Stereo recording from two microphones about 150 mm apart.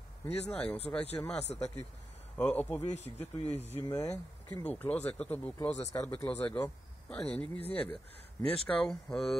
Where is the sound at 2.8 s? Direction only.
45° left (ahead or behind).